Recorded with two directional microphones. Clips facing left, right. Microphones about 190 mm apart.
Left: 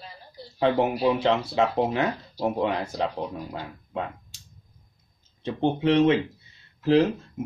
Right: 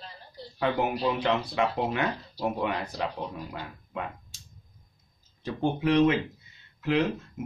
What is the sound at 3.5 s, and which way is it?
Speech, 30° left (ahead or behind).